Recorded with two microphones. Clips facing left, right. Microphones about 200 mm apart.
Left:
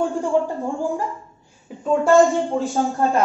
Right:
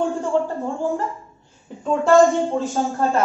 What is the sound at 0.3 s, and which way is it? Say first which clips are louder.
Speech: left 1 dB; 10° left (ahead or behind).